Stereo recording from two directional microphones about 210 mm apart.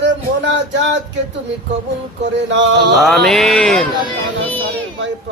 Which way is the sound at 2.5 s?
60° right (ahead or behind).